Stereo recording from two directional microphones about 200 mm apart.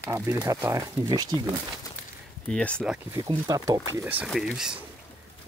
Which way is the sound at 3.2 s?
20° right (ahead or behind).